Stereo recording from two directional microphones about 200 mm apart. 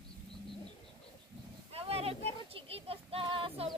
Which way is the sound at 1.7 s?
30° right (ahead or behind).